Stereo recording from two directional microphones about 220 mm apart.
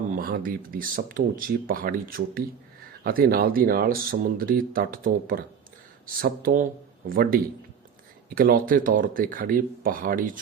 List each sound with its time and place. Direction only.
0.2 s speech: 40° right (ahead or behind)